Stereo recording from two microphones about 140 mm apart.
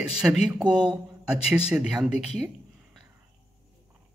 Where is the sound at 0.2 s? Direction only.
5° right (ahead or behind).